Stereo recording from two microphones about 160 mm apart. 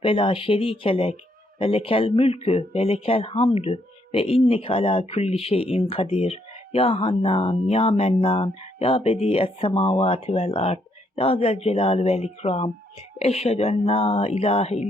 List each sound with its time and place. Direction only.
0.0 s speech: 35° left (ahead or behind)